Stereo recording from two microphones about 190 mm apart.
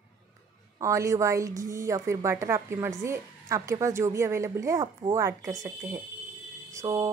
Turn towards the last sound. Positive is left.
turn(degrees=-15)  # may be behind; listen again after turning